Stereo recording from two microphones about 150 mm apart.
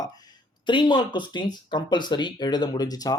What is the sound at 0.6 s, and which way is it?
Speech, 30° left (ahead or behind).